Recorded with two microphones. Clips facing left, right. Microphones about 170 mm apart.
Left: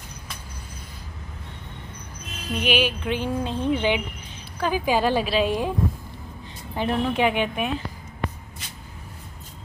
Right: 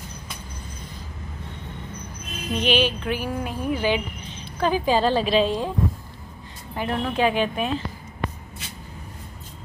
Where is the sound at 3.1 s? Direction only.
25° left (ahead or behind).